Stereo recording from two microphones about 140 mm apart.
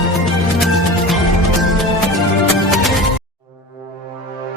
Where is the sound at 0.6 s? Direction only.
Centre (ahead or behind).